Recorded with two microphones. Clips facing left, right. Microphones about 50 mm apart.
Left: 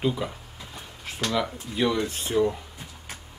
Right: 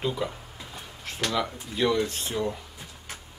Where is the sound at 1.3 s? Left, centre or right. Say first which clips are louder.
Left 4 dB; centre.